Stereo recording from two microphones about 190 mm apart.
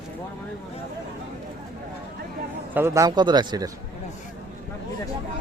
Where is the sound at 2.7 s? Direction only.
15° right (ahead or behind).